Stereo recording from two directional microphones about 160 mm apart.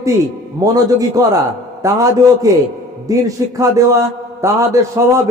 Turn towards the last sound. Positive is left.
turn(degrees=-20)  # may be behind; listen again after turning